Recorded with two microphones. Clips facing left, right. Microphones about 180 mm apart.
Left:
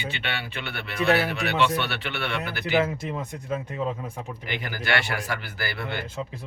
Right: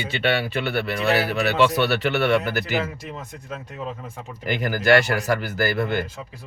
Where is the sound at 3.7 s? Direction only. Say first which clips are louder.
Left 3 dB; 15° left (ahead or behind).